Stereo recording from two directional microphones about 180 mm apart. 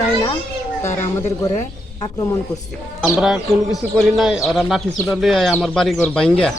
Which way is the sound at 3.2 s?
5° right (ahead or behind).